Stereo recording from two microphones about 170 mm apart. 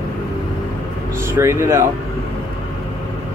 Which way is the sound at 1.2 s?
15° right (ahead or behind).